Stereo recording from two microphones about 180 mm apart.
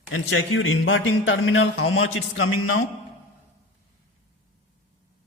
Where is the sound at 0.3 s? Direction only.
90° left.